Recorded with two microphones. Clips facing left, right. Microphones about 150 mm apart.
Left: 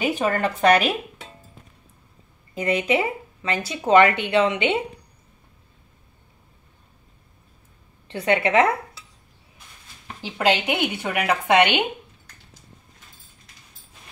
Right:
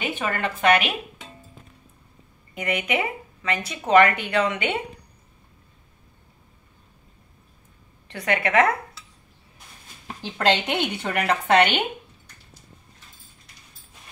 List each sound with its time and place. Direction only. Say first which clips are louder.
0.1 s speech: left 5 dB; 40° left (ahead or behind)
2.5 s speech: left 4 dB; 30° left (ahead or behind)
8.1 s speech: left 3 dB; 30° left (ahead or behind)
10.2 s speech: left 1 dB; 10° left (ahead or behind)